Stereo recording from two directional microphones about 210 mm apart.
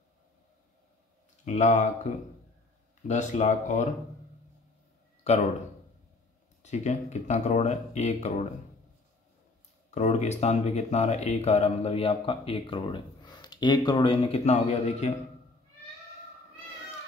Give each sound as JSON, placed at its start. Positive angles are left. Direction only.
{"t": 1.4, "sound": "speech", "side_deg": 35}
{"t": 5.2, "sound": "speech", "side_deg": 30}
{"t": 6.6, "sound": "speech", "side_deg": 35}
{"t": 9.8, "sound": "speech", "side_deg": 35}